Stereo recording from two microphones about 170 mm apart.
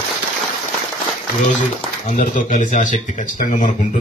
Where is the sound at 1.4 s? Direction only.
50° left (ahead or behind).